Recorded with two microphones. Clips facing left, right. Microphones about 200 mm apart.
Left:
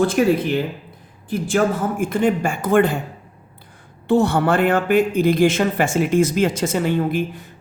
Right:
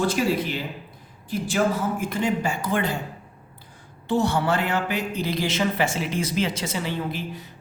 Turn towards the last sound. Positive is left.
turn(degrees=50)  # may be behind; listen again after turning